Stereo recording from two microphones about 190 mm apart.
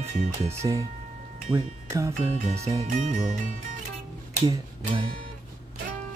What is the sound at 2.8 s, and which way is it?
Speech, 40° right (ahead or behind).